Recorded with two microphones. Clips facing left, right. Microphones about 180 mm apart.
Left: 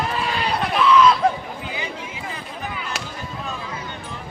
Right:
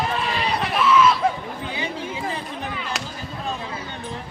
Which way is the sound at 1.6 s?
30° right (ahead or behind).